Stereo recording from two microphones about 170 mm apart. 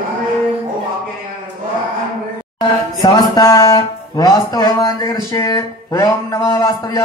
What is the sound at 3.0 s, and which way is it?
Speech, 25° left (ahead or behind).